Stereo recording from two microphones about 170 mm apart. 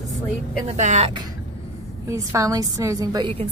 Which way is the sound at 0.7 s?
45° right (ahead or behind).